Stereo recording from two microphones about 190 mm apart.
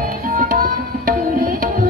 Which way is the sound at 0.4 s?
45° right (ahead or behind).